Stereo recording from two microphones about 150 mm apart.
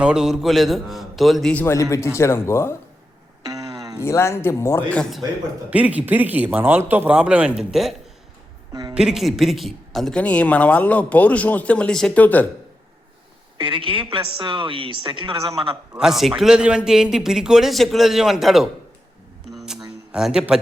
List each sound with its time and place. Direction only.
0.0 s a man's voice: 5° right (ahead or behind)
1.6 s a man's voice: 20° left (ahead or behind)
3.4 s music: 25° right (ahead or behind)
4.0 s a man's voice: 15° left (ahead or behind)
5.7 s a man's voice: 10° right (ahead or behind)
8.7 s a woman's voice: 25° right (ahead or behind)
9.0 s a man's voice: centre (ahead or behind)
13.6 s a woman's voice: 35° right (ahead or behind)
16.0 s a man's voice: centre (ahead or behind)
19.5 s a sound: centre (ahead or behind)
20.1 s a man's voice: 5° right (ahead or behind)